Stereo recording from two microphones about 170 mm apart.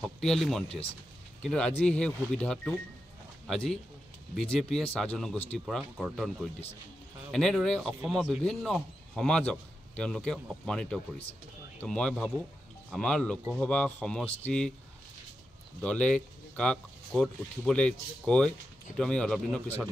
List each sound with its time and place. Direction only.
0.0 s a man's voice: 5° left (ahead or behind)
15.8 s a man's voice: 5° left (ahead or behind)